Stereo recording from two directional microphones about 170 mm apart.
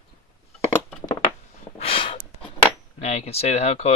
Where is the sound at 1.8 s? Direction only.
35° left (ahead or behind).